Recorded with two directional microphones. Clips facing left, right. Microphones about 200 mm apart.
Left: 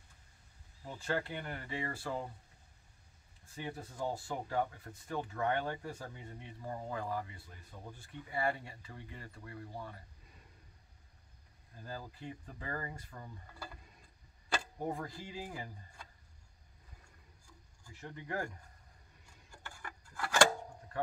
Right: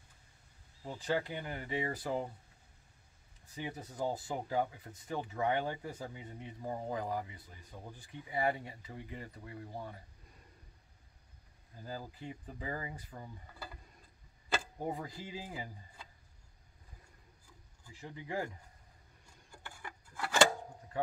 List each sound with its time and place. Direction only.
0.9 s speech: 15° right (ahead or behind)
3.5 s speech: 15° right (ahead or behind)
11.8 s speech: 15° right (ahead or behind)
14.8 s speech: 15° right (ahead or behind)
17.8 s speech: 10° right (ahead or behind)
19.5 s a sound: 10° right (ahead or behind)